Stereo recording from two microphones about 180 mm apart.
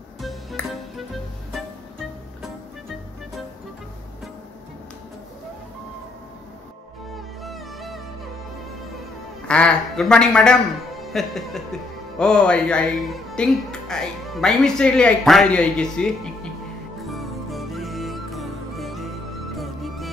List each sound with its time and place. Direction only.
0.2 s music: centre (ahead or behind)
7.4 s music: centre (ahead or behind)
9.5 s speech: 5° left (ahead or behind)
17.0 s music: centre (ahead or behind)